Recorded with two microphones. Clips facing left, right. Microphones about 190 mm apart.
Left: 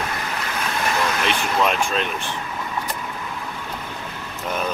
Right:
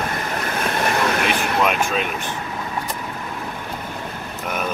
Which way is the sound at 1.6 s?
5° right (ahead or behind).